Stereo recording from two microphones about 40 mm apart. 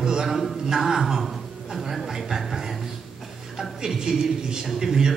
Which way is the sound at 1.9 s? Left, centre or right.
Centre.